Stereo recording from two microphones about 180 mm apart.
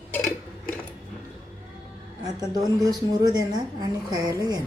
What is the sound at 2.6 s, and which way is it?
A woman's voice, 20° right (ahead or behind).